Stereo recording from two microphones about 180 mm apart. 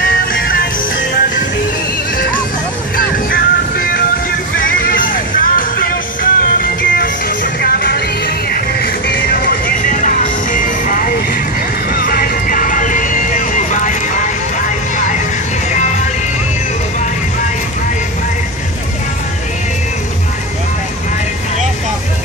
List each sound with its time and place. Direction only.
0.0 s music: 55° left (ahead or behind)
3.3 s music: 55° left (ahead or behind)